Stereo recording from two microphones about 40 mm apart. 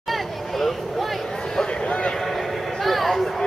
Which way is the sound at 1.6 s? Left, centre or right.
Left.